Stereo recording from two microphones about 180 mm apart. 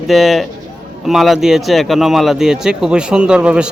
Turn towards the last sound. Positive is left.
turn(degrees=-5)  # may be behind; listen again after turning